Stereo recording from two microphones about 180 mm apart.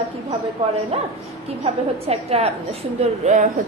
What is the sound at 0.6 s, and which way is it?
A woman's voice, 30° right (ahead or behind).